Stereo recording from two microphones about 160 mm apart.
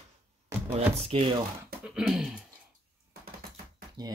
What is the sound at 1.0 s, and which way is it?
Speech, 35° right (ahead or behind).